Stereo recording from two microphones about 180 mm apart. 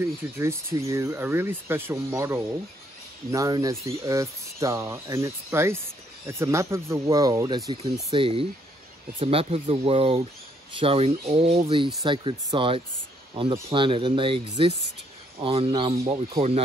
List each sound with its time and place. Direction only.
0.4 s speech: 15° right (ahead or behind); by 15.9 s 30° right (ahead or behind)
15.9 s speech: 20° right (ahead or behind)
16.3 s speech: 35° right (ahead or behind)